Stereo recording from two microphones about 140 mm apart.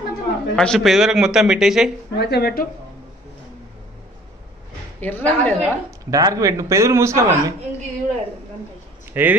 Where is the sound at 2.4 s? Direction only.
90° left.